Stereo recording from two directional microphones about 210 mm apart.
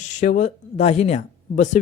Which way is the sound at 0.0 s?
35° left (ahead or behind).